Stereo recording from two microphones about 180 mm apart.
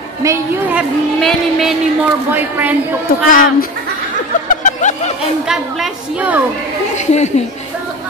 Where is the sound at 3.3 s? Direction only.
50° left (ahead or behind).